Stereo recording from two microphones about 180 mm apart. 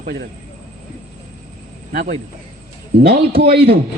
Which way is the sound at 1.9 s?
40° right (ahead or behind).